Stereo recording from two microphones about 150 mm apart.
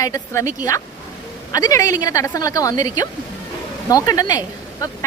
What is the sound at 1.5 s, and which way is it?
A woman's voice, 20° left (ahead or behind).